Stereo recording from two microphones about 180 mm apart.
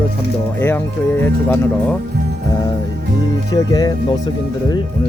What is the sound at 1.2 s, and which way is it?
Speech, 10° left (ahead or behind).